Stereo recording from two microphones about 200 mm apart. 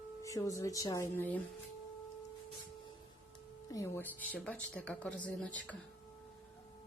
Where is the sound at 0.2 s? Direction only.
15° left (ahead or behind).